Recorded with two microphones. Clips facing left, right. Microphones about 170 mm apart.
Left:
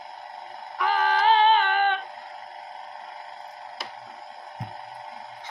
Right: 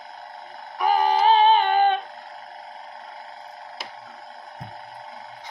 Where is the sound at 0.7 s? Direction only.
20° right (ahead or behind).